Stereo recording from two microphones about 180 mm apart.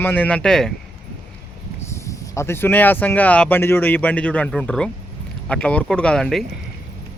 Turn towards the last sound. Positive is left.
turn(degrees=5)  # may be behind; listen again after turning